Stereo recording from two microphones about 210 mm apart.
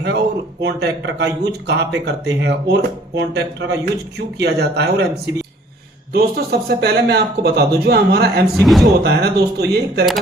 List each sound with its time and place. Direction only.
0.6 s speech: 55° right (ahead or behind)
8.6 s speech: centre (ahead or behind)
9.0 s speech: 50° right (ahead or behind)